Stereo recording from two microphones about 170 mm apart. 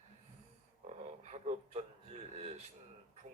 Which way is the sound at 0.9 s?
40° right (ahead or behind).